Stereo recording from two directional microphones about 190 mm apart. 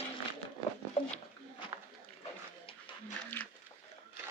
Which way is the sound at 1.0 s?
30° left (ahead or behind).